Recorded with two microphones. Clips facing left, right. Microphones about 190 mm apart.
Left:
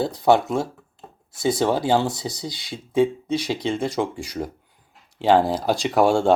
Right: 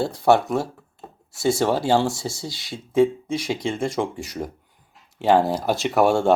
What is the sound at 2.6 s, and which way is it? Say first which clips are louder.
Speech: right 2 dB; centre (ahead or behind).